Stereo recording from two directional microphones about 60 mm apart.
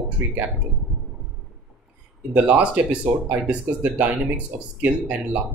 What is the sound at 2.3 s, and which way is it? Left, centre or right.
Speech, right.